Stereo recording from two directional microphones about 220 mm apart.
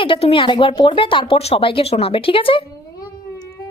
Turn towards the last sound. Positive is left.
turn(degrees=15)  # may be behind; listen again after turning